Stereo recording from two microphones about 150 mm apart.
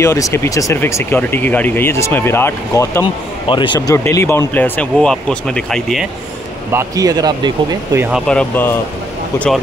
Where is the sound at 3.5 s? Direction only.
35° left (ahead or behind).